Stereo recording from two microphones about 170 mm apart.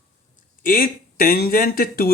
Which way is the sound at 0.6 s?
55° left (ahead or behind).